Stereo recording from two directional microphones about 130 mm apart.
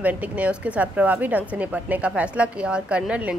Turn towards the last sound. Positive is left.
turn(degrees=-5)  # may be behind; listen again after turning